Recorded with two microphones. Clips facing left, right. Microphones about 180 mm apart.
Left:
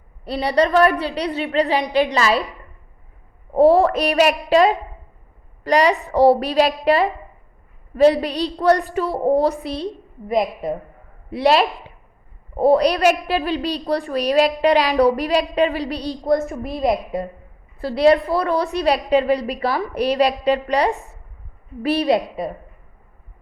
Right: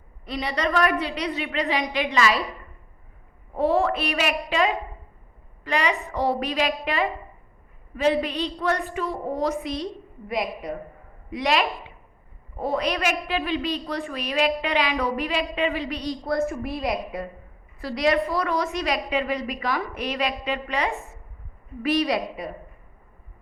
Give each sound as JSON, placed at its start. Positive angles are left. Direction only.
{"t": 0.3, "sound": "a woman's voice", "side_deg": 35}
{"t": 3.5, "sound": "a woman's voice", "side_deg": 35}
{"t": 16.2, "sound": "a woman's voice", "side_deg": 20}
{"t": 20.9, "sound": "a woman's voice", "side_deg": 0}
{"t": 21.8, "sound": "a woman's voice", "side_deg": 30}